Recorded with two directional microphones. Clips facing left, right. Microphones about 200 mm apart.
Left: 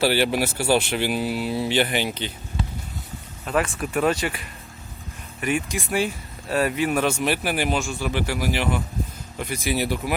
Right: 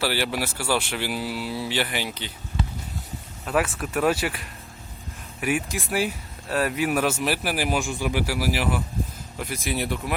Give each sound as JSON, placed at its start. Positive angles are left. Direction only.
{"t": 0.0, "sound": "speech", "side_deg": 20}
{"t": 3.4, "sound": "speech", "side_deg": -5}
{"t": 7.8, "sound": "speech", "side_deg": -15}